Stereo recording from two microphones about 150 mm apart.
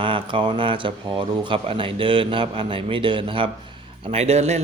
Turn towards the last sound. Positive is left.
turn(degrees=-45)  # may be behind; listen again after turning